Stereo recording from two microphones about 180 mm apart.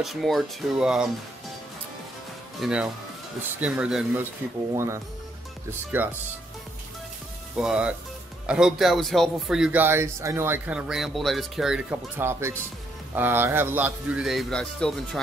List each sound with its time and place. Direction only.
0.0 s speech: centre (ahead or behind)
2.6 s speech: 5° right (ahead or behind)
7.5 s speech: 5° right (ahead or behind)